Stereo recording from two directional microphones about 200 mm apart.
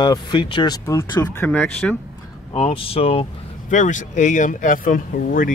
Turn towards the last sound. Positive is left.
turn(degrees=45)  # may be behind; listen again after turning